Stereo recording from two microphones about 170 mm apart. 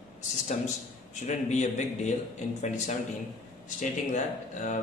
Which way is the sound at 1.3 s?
45° left (ahead or behind).